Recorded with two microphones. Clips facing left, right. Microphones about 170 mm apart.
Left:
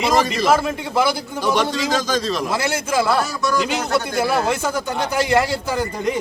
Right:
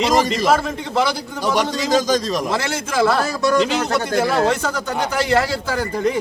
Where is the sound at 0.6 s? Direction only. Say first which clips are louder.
Left 1 dB; 10° left (ahead or behind).